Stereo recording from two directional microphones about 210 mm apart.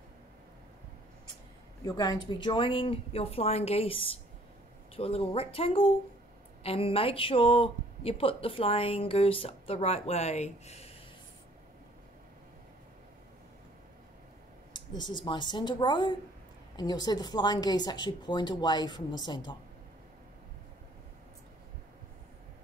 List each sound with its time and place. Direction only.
1.9 s a woman's voice: 20° left (ahead or behind)
15.0 s a woman's voice: 20° left (ahead or behind)